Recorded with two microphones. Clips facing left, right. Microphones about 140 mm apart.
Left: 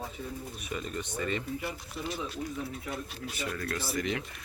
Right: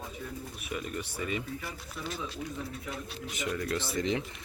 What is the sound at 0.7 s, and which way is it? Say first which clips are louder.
Speech: even; 10° right (ahead or behind).